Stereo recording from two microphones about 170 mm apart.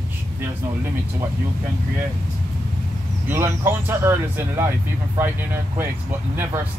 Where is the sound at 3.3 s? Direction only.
15° right (ahead or behind).